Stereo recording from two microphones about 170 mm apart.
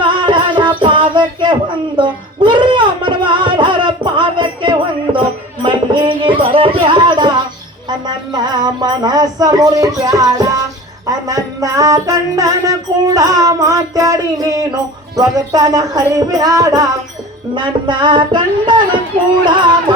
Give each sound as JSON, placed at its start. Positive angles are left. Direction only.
{"t": 0.0, "sound": "music", "side_deg": -30}